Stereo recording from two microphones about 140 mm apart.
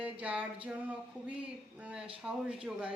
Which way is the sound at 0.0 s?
10° right (ahead or behind).